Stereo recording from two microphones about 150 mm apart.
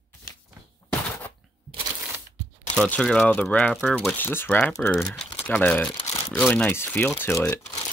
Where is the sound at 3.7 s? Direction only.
Centre (ahead or behind).